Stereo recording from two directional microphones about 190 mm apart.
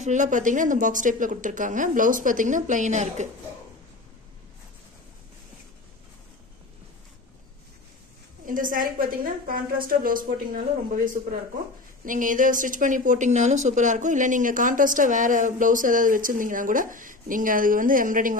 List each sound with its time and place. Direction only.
0.0 s speech: 40° right (ahead or behind)
8.5 s speech: 45° right (ahead or behind)